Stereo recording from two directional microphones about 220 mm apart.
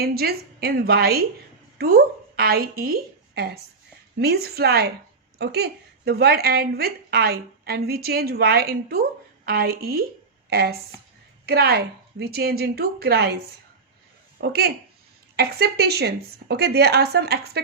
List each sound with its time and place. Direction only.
0.0 s a woman's voice: 45° right (ahead or behind)
14.4 s a woman's voice: 45° right (ahead or behind)